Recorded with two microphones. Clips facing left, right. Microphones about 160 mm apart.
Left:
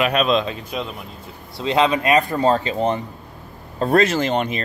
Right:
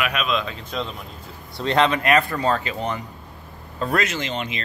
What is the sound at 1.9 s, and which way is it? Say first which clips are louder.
Speech: left 2 dB; 15° left (ahead or behind).